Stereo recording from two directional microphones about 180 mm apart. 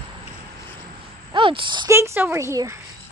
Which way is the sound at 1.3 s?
30° right (ahead or behind).